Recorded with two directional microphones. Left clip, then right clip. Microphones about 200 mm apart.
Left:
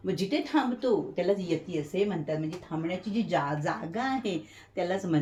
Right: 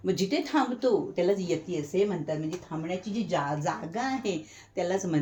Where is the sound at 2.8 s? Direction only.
5° right (ahead or behind).